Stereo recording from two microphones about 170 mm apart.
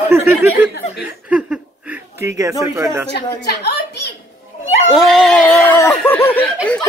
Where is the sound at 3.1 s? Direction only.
75° left (ahead or behind).